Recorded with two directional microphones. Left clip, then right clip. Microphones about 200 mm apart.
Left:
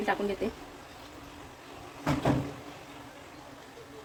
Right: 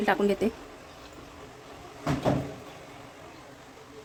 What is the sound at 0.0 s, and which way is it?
Speech, 25° right (ahead or behind).